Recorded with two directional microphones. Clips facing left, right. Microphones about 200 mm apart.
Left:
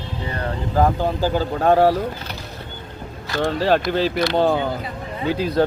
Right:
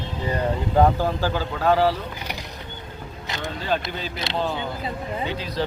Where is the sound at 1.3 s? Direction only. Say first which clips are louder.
Left 6 dB; 45° left (ahead or behind).